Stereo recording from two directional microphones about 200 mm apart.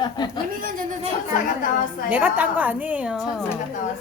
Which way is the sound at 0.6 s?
45° right (ahead or behind).